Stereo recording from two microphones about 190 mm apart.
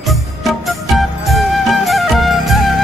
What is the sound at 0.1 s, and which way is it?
Music, centre (ahead or behind).